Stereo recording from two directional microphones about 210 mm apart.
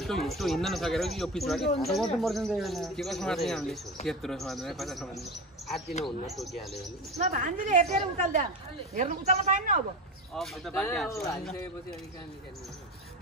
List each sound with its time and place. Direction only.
0.0 s speech: centre (ahead or behind)
6.2 s speech: centre (ahead or behind)
7.2 s a woman's voice: 35° right (ahead or behind)
10.3 s speech: centre (ahead or behind)